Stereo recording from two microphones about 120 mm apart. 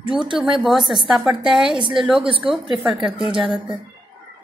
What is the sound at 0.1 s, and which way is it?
A woman's voice, 5° right (ahead or behind).